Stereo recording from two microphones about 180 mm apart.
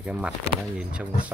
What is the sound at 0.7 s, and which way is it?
Speech, 5° right (ahead or behind).